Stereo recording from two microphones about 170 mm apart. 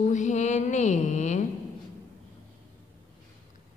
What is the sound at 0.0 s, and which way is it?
Mantra, 45° left (ahead or behind).